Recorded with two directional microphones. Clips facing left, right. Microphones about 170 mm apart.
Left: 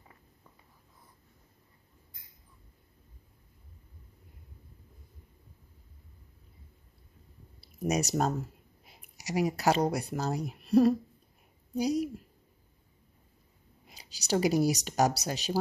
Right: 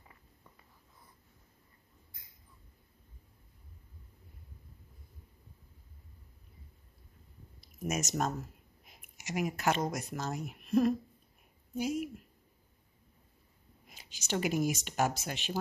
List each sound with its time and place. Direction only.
7.6 s speech: 35° left (ahead or behind)
13.9 s speech: 35° left (ahead or behind)